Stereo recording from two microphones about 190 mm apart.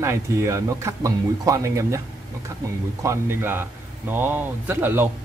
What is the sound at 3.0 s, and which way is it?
Speech, 15° right (ahead or behind).